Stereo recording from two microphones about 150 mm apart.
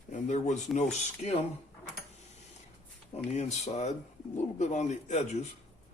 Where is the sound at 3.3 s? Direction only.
45° left (ahead or behind).